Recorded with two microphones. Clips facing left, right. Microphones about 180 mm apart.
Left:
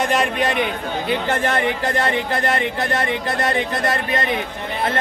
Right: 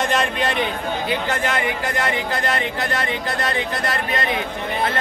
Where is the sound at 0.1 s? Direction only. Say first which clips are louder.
Left 2 dB; 15° left (ahead or behind).